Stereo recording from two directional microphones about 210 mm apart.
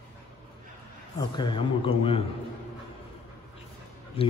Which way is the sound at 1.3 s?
20° left (ahead or behind).